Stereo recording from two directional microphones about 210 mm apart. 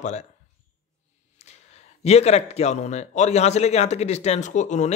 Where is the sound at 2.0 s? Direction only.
30° left (ahead or behind).